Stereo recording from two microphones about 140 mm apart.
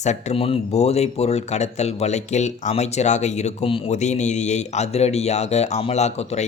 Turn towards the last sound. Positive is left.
turn(degrees=50)  # may be behind; listen again after turning